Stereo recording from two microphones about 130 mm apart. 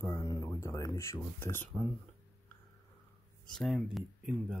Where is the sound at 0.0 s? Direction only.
20° left (ahead or behind).